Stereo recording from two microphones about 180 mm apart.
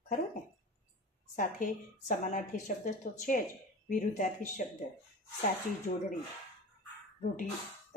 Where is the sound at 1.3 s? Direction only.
45° left (ahead or behind).